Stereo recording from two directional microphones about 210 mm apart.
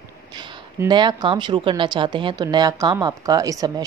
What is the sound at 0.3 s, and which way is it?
A woman's voice, 20° right (ahead or behind).